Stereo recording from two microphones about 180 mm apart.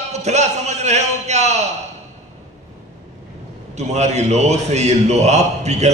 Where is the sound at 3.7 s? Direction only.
40° right (ahead or behind).